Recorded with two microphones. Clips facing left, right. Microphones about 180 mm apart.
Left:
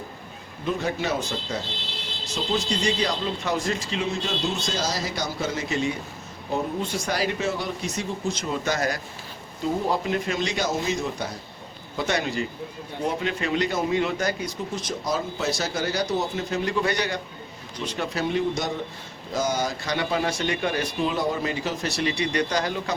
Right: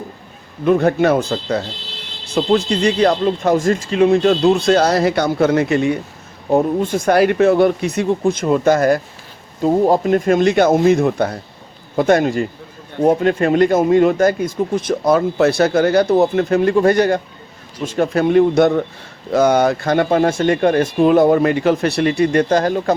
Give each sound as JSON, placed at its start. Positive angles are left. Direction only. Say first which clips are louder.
{"t": 0.6, "sound": "speech", "louder": "right 13 dB", "side_deg": -60}